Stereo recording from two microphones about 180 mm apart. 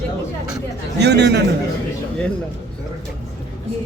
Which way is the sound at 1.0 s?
70° right (ahead or behind).